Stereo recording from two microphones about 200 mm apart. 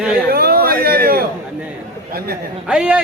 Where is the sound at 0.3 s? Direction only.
50° right (ahead or behind).